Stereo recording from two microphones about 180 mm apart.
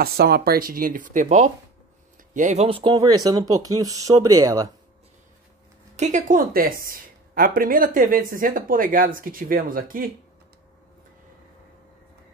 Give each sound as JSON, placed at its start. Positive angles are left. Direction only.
{"t": 0.0, "sound": "a woman's voice", "side_deg": -60}
{"t": 5.9, "sound": "a woman's voice", "side_deg": -40}